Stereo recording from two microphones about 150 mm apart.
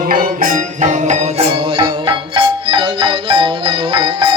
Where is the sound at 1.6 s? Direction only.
35° right (ahead or behind).